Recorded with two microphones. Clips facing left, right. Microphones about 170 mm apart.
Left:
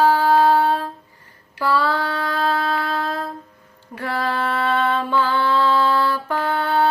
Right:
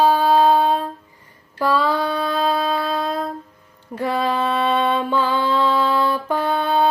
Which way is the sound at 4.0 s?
15° right (ahead or behind).